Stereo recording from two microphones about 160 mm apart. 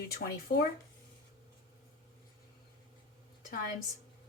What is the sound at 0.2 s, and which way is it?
Speech, 85° left.